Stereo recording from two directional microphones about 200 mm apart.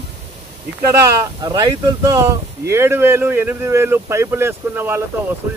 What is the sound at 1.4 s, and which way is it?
Speech, 20° right (ahead or behind).